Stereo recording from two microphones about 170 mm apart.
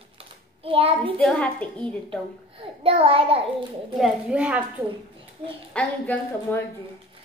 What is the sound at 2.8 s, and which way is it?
Speech, 35° right (ahead or behind).